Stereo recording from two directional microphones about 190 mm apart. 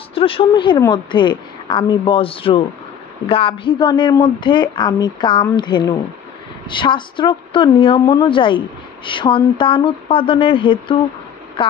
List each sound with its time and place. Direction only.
0.1 s a woman's voice: 30° left (ahead or behind)